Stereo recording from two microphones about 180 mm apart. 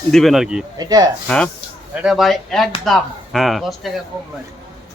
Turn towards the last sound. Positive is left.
turn(degrees=0)  # may be behind; listen again after turning